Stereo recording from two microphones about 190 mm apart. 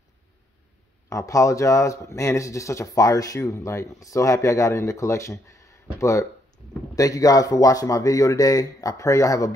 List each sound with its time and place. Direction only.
1.0 s speech: 15° left (ahead or behind)